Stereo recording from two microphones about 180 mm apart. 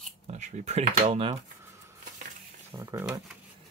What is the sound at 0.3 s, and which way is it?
Speech, 40° right (ahead or behind).